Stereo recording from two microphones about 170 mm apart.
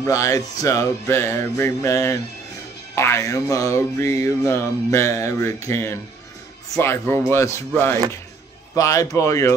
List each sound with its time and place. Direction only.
0.0 s music: 20° left (ahead or behind)
8.7 s a man's voice: 20° left (ahead or behind)